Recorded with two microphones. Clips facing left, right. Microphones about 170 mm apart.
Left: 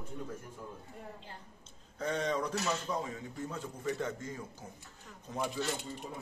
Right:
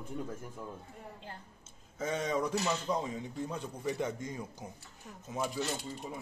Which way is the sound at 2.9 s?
15° right (ahead or behind).